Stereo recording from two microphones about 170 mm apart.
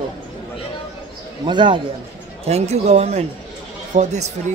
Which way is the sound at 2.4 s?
40° right (ahead or behind).